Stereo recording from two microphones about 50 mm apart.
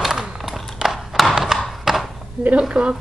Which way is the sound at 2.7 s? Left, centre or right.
Centre.